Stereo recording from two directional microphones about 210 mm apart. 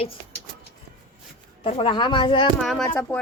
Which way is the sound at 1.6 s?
25° left (ahead or behind).